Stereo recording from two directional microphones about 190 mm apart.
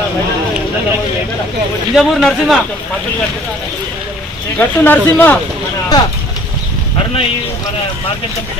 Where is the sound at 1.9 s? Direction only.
Centre (ahead or behind).